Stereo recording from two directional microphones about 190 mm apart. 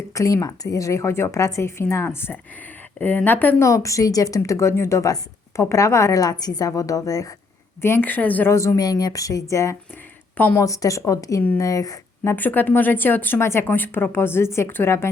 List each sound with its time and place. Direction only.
0.1 s speech: 15° left (ahead or behind)